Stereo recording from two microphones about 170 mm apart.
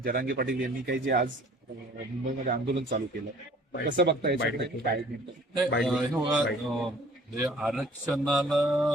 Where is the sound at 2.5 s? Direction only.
80° right.